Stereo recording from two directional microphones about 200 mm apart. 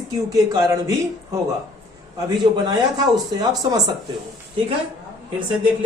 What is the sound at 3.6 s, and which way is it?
Speech, 20° right (ahead or behind).